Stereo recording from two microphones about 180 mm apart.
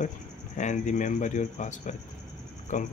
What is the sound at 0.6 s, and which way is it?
Speech, 45° left (ahead or behind).